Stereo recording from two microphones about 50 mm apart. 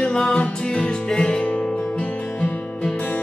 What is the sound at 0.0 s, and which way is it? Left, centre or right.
Music, centre.